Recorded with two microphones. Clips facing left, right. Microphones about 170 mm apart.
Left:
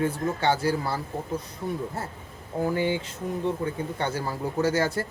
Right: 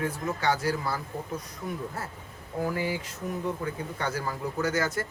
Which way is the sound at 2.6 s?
25° left (ahead or behind).